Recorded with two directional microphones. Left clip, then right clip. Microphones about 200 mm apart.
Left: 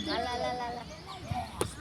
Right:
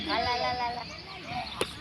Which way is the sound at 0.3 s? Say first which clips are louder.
Right 4 dB; 60° left (ahead or behind).